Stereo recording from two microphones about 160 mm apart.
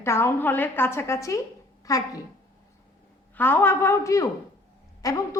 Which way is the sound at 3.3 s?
10° left (ahead or behind).